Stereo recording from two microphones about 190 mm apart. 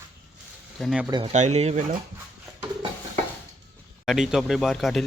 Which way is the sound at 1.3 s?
35° right (ahead or behind).